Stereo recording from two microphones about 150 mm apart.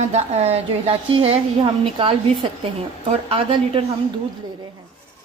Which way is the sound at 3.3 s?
40° right (ahead or behind).